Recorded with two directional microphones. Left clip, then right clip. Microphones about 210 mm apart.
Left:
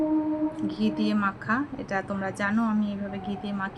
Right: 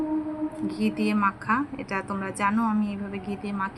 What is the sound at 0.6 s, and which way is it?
Speech, 15° left (ahead or behind).